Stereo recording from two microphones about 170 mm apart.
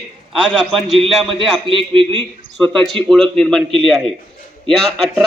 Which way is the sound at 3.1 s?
5° left (ahead or behind).